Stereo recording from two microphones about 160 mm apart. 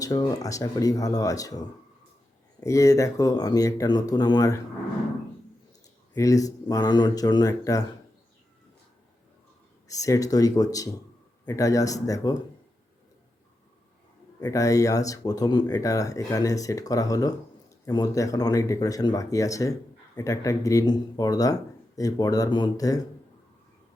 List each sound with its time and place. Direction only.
0.0 s speech: 25° left (ahead or behind)
6.1 s speech: 20° left (ahead or behind)
9.9 s speech: 20° left (ahead or behind)
14.4 s speech: 20° left (ahead or behind)